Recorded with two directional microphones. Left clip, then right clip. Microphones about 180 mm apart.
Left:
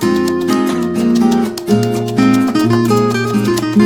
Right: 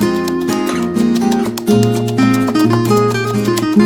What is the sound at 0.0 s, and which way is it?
Music, centre (ahead or behind).